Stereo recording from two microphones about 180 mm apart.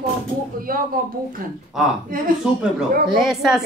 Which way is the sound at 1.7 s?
Centre (ahead or behind).